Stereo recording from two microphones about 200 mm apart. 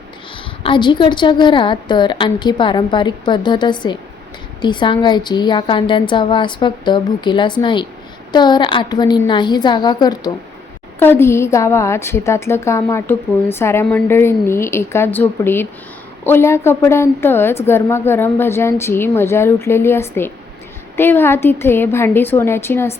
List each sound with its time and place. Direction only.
0.6 s a woman's voice: 25° left (ahead or behind)